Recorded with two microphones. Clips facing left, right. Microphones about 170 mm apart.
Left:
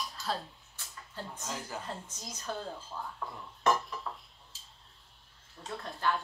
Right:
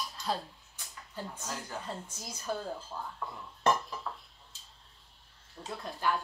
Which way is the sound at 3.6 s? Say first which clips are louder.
Even; centre (ahead or behind).